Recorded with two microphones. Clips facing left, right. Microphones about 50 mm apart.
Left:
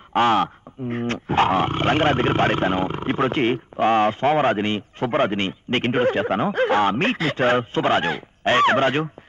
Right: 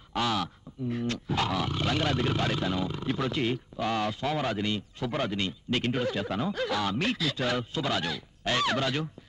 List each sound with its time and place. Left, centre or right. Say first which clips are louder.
0.1 s speech: left 11 dB; left